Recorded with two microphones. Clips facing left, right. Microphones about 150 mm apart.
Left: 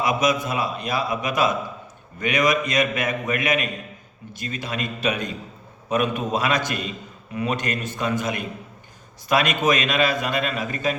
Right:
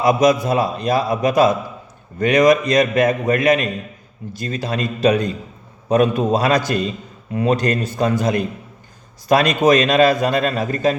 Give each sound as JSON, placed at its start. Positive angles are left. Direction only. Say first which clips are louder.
{"t": 0.0, "sound": "a man's voice", "louder": "right 7 dB", "side_deg": -35}